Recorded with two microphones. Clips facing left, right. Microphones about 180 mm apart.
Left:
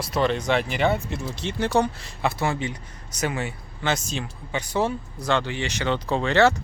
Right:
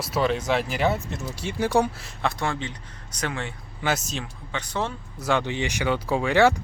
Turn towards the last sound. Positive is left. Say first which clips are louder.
# even
turn(degrees=-10)  # may be behind; listen again after turning